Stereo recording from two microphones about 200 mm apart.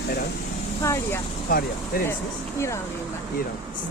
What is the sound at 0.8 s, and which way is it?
Speech, 15° left (ahead or behind).